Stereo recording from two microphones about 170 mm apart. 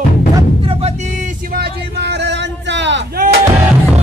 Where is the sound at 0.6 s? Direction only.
35° right (ahead or behind); by 3.2 s 90° right.